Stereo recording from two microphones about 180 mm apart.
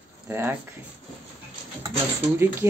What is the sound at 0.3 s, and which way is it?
Speech, 10° right (ahead or behind).